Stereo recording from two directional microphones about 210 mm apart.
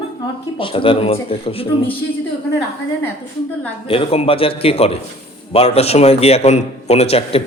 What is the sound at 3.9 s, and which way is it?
A man's voice, 25° left (ahead or behind).